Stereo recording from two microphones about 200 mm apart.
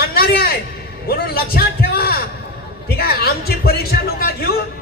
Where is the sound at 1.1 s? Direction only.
50° left (ahead or behind).